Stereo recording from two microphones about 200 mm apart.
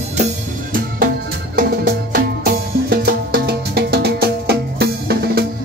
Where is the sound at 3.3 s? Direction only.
50° right (ahead or behind).